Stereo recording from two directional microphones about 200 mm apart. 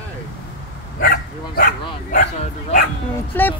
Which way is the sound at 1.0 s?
45° left (ahead or behind).